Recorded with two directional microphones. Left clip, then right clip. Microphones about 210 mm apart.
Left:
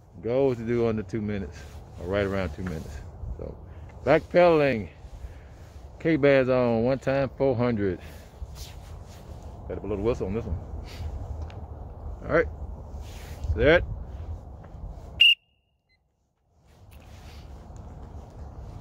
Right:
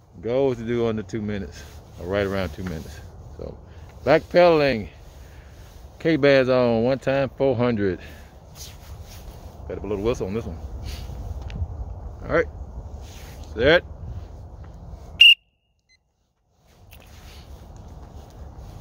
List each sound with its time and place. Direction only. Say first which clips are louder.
0.2 s speech: right 2 dB; 15° right (ahead or behind)
5.9 s speech: right 3 dB; 25° right (ahead or behind)
9.7 s a sound: right 3 dB; 30° right (ahead or behind)
12.2 s speech: right 2 dB; 10° right (ahead or behind)
13.1 s a sound: right 1 dB; centre (ahead or behind)
13.5 s speech: right 3 dB; 15° right (ahead or behind)
15.1 s whistle: right 6 dB; 20° right (ahead or behind)